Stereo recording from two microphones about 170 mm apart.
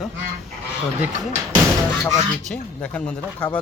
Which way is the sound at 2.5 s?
5° left (ahead or behind).